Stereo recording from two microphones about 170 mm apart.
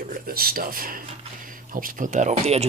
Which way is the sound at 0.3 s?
60° right (ahead or behind).